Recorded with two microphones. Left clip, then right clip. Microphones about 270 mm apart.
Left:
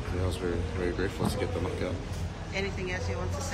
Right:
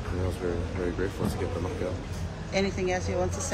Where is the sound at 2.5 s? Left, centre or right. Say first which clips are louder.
Right 6 dB; centre.